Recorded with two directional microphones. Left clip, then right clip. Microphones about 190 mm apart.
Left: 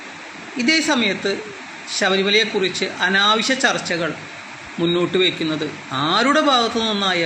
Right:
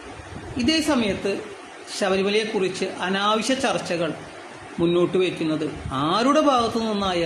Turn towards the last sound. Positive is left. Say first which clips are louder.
# left 4 dB
turn(degrees=-15)  # may be behind; listen again after turning